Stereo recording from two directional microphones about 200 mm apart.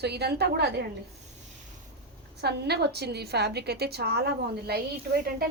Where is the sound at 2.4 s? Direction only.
55° right (ahead or behind).